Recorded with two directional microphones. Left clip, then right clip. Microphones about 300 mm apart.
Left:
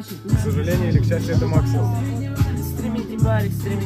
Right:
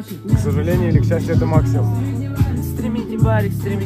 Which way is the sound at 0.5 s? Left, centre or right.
Centre.